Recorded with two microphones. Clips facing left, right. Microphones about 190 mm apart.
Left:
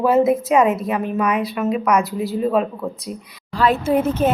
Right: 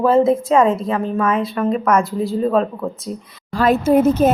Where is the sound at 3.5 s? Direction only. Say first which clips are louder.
Right 3 dB; 45° right (ahead or behind).